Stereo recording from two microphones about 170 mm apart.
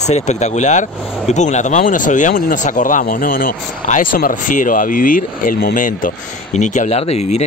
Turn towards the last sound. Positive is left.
turn(degrees=40)  # may be behind; listen again after turning